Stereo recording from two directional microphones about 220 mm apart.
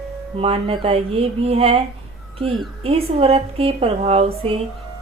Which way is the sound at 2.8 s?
25° right (ahead or behind).